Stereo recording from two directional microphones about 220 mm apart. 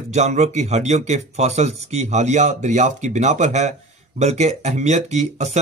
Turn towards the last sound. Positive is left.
turn(degrees=-30)  # may be behind; listen again after turning